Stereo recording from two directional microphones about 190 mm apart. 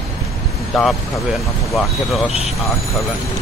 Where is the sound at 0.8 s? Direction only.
Centre (ahead or behind).